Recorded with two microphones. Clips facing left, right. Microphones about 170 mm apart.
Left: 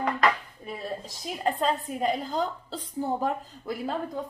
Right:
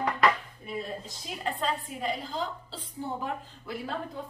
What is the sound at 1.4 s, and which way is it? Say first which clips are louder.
A woman's voice: left 5 dB; 45° left (ahead or behind).